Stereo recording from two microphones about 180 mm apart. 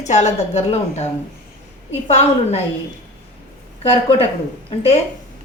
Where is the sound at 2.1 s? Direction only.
35° left (ahead or behind).